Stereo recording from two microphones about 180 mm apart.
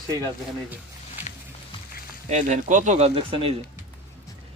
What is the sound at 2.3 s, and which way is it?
Speech, 40° right (ahead or behind).